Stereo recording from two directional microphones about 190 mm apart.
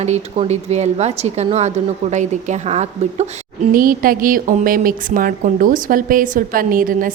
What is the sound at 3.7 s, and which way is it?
A woman's voice, 50° right (ahead or behind).